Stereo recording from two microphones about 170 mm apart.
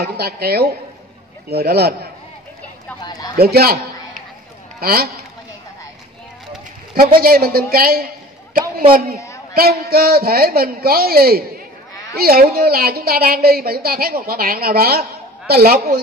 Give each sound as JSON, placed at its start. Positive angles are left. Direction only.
{"t": 0.0, "sound": "a woman's voice", "side_deg": -70}
{"t": 3.0, "sound": "speech", "side_deg": 25}
{"t": 3.3, "sound": "a man's voice", "side_deg": -65}
{"t": 7.2, "sound": "a woman's voice", "side_deg": -60}
{"t": 9.5, "sound": "a woman's voice", "side_deg": -60}